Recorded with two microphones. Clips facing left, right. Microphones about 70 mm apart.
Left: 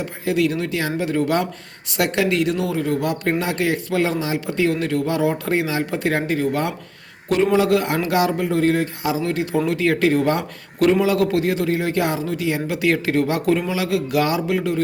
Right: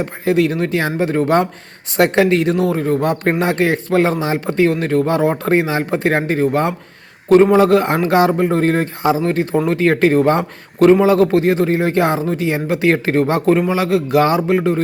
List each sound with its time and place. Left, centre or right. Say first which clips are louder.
0.0 s speech: right 5 dB; right